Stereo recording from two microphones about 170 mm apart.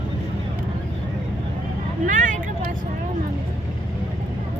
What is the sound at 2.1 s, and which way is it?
Vehicle, 50° right (ahead or behind).